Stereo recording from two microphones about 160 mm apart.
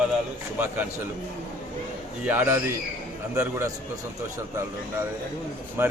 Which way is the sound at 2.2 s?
10° right (ahead or behind).